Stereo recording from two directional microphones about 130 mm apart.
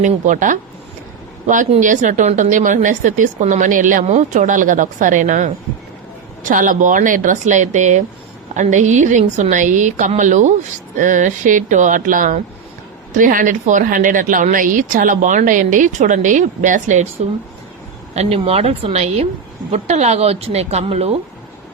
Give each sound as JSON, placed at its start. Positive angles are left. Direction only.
{"t": 0.0, "sound": "speech", "side_deg": -75}
{"t": 1.8, "sound": "speech", "side_deg": -75}
{"t": 6.4, "sound": "speech", "side_deg": -90}
{"t": 18.1, "sound": "a woman's voice", "side_deg": -55}